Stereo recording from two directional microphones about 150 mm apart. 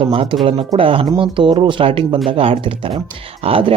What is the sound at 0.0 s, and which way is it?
Speech, 35° right (ahead or behind).